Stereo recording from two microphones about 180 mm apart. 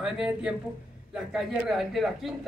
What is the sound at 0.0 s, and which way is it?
Speech, 5° right (ahead or behind).